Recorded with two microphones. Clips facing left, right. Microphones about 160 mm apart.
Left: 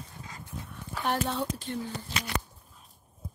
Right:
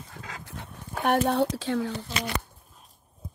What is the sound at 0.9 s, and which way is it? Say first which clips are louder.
Speech: right 6 dB; 55° right (ahead or behind).